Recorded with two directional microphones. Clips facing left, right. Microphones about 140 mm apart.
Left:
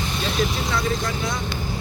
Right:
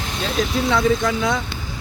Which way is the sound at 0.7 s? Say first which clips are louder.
Right 6 dB; 90° right.